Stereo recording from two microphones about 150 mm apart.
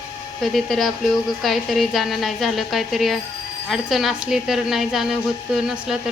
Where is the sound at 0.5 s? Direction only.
Centre (ahead or behind).